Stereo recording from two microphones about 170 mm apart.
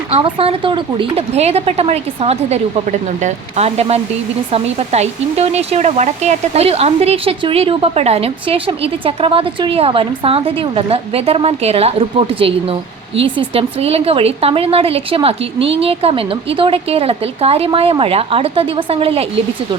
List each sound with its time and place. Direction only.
0.1 s speech: 35° right (ahead or behind)